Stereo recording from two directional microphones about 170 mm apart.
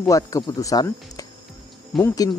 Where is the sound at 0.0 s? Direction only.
20° left (ahead or behind).